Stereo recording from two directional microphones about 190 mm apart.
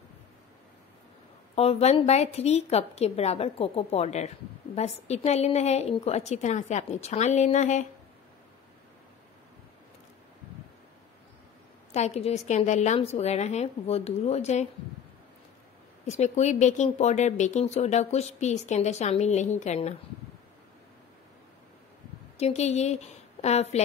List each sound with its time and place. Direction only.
1.5 s speech: 30° left (ahead or behind)
11.9 s speech: 35° left (ahead or behind)
16.1 s speech: 35° left (ahead or behind)
22.4 s speech: 35° left (ahead or behind)